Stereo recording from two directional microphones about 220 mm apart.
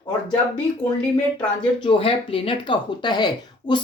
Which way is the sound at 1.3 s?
20° left (ahead or behind).